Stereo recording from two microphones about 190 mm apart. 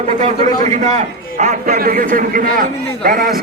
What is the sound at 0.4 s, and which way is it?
A man's voice, 40° right (ahead or behind).